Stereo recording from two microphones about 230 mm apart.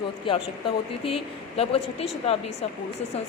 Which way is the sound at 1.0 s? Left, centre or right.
Left.